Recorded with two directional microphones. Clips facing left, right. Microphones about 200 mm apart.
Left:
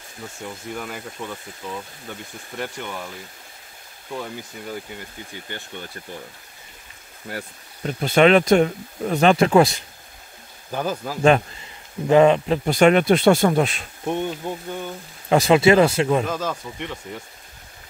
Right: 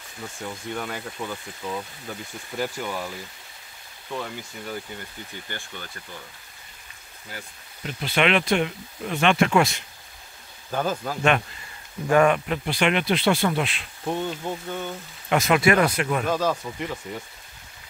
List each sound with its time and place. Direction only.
0.4 s speech: 5° left (ahead or behind)
4.1 s speech: 10° left (ahead or behind)
7.3 s speech: 60° left (ahead or behind)
7.8 s speech: 45° left (ahead or behind)
10.7 s speech: 10° left (ahead or behind)
12.1 s speech: 25° left (ahead or behind)
12.6 s speech: 45° left (ahead or behind)
14.0 s speech: 15° left (ahead or behind)
15.2 s speech: 30° left (ahead or behind)
16.3 s speech: centre (ahead or behind)